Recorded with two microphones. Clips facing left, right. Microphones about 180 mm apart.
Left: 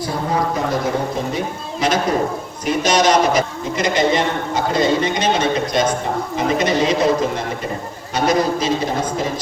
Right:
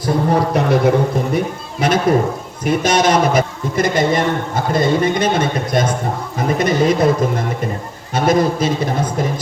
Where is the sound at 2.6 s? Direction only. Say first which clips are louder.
Right 1 dB; 50° right (ahead or behind).